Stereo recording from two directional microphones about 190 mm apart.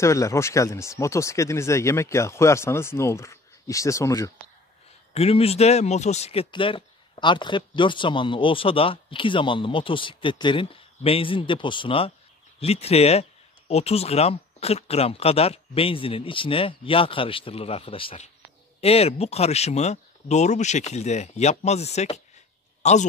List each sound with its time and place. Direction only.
0.0 s speech: 15° left (ahead or behind)
5.1 s speech: 30° left (ahead or behind)